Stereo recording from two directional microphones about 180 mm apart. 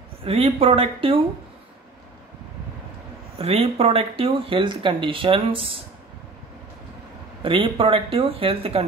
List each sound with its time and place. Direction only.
0.2 s speech: 30° right (ahead or behind)
3.3 s speech: 35° right (ahead or behind)
7.4 s speech: 30° right (ahead or behind)